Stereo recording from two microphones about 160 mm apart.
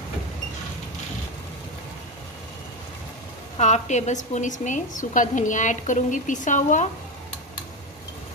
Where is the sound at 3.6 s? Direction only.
45° left (ahead or behind).